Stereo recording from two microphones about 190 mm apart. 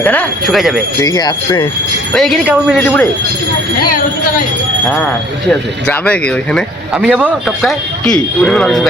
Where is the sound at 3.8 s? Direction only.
50° left (ahead or behind).